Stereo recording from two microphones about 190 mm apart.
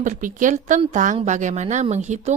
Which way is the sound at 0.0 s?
45° right (ahead or behind).